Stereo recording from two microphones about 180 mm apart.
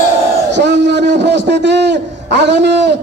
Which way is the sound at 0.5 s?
75° right (ahead or behind).